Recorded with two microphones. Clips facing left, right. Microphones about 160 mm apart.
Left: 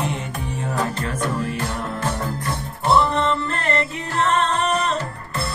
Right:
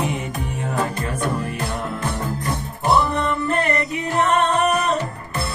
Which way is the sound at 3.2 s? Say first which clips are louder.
Right 1 dB; 15° right (ahead or behind).